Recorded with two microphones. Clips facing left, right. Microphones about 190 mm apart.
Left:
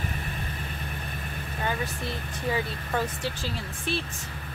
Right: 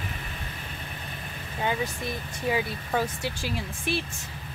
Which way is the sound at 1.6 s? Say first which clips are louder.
Right 2 dB; 15° right (ahead or behind).